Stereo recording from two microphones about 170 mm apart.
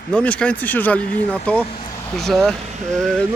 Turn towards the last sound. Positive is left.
turn(degrees=5)  # may be behind; listen again after turning